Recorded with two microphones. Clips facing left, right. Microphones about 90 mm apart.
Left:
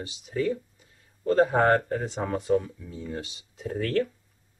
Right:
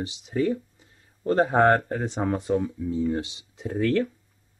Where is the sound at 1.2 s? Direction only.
25° right (ahead or behind).